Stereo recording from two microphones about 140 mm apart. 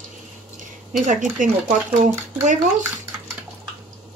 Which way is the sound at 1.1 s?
65° right (ahead or behind).